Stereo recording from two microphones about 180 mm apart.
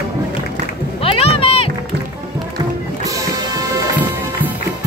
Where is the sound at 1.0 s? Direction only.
30° left (ahead or behind).